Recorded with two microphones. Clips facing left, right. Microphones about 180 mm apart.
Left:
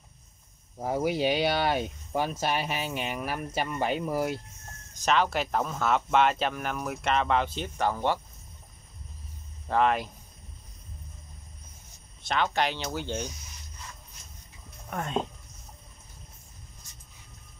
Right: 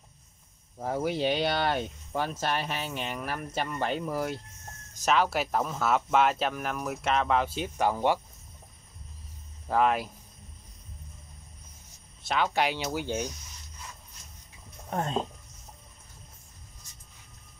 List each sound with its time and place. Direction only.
0.7 s speech: 10° left (ahead or behind)
5.0 s speech: 5° right (ahead or behind)
9.7 s speech: 5° right (ahead or behind)
12.3 s speech: 5° right (ahead or behind)
14.9 s speech: 30° right (ahead or behind)